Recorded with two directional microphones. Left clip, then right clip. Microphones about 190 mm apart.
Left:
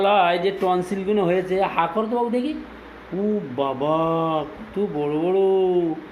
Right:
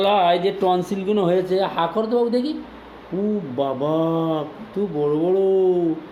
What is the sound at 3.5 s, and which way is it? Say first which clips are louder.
Speech: right 1 dB; 15° right (ahead or behind).